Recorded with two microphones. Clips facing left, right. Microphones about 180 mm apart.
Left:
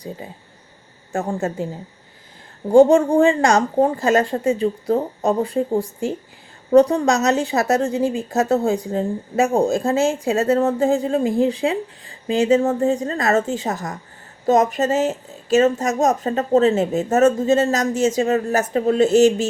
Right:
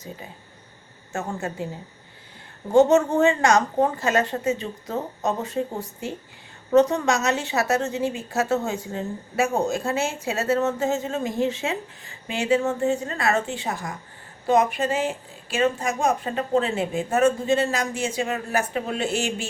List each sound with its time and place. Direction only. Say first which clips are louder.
1.1 s a woman's voice: left 6 dB; 35° left (ahead or behind)
3.2 s a woman's voice: left 4 dB; 35° left (ahead or behind)
6.7 s a woman's voice: left 5 dB; 35° left (ahead or behind)